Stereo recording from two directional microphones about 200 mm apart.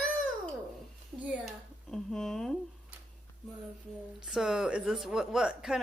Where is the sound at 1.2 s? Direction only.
5° right (ahead or behind).